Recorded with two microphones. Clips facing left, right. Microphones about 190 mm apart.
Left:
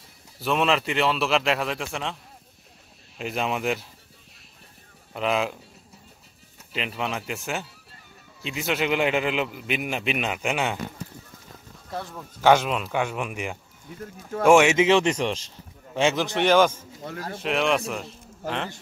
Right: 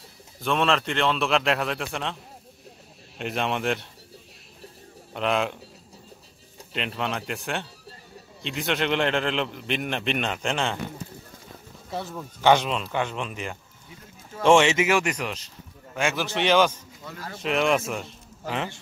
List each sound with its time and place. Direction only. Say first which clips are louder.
0.4 s a man's voice: left 1 dB; 5° left (ahead or behind)
3.2 s a man's voice: even; centre (ahead or behind)
5.1 s a man's voice: even; centre (ahead or behind)
6.7 s a man's voice: even; 5° left (ahead or behind)
11.9 s a man's voice: right 2 dB; 5° right (ahead or behind)
12.4 s speech: left 1 dB; 5° left (ahead or behind)
14.8 s speech: left 4 dB; 25° left (ahead or behind)
17.0 s speech: left 5 dB; 50° left (ahead or behind)
17.4 s a man's voice: right 1 dB; centre (ahead or behind)